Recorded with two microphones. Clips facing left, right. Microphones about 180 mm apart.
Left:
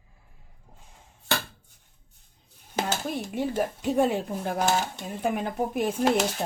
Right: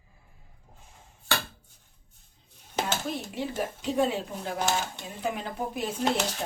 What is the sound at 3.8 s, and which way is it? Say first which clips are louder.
Speech: left 2 dB; 50° left (ahead or behind).